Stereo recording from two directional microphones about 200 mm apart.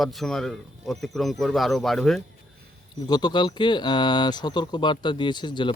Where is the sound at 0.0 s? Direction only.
Centre (ahead or behind).